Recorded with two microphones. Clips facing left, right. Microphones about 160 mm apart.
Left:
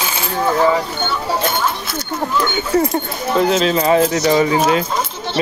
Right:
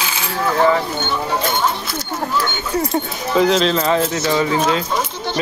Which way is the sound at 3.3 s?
5° left (ahead or behind).